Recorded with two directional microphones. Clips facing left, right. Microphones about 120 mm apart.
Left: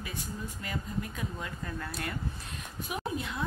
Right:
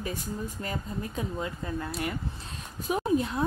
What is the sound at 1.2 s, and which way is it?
Speech, 25° right (ahead or behind).